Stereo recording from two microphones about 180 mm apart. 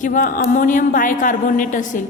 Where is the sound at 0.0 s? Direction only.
45° left (ahead or behind).